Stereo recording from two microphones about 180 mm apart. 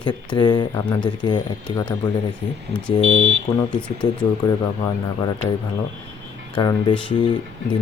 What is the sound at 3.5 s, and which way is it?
Speech, 20° left (ahead or behind).